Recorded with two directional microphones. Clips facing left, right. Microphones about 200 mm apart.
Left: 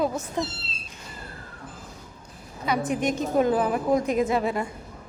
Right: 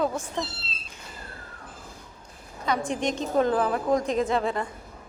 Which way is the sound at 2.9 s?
5° left (ahead or behind).